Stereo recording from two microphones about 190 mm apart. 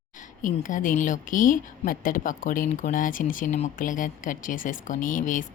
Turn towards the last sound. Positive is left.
turn(degrees=45)  # may be behind; listen again after turning